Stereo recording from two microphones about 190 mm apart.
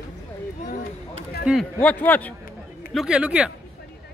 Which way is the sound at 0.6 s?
45° left (ahead or behind).